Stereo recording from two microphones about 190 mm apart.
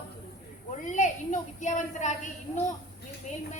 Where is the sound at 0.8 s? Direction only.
40° left (ahead or behind).